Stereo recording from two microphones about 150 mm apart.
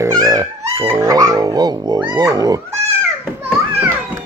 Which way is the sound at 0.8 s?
20° right (ahead or behind).